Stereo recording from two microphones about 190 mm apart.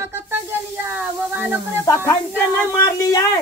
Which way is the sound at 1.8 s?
15° left (ahead or behind).